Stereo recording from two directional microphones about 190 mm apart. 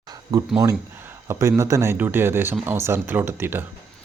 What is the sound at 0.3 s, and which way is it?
Speech, 20° right (ahead or behind).